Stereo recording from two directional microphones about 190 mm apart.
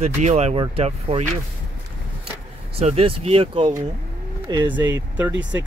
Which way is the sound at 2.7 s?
35° right (ahead or behind).